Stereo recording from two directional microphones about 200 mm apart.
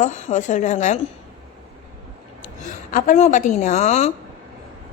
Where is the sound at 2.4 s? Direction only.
40° left (ahead or behind).